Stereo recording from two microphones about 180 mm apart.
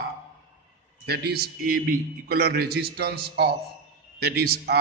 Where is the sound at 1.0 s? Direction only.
65° right (ahead or behind).